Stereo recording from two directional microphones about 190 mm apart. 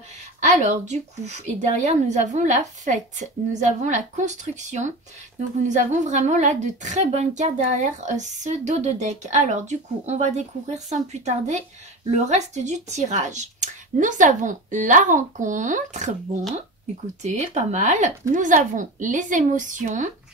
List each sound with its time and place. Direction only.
0.4 s a woman's voice: 40° right (ahead or behind)
17.2 s a woman's voice: 40° right (ahead or behind)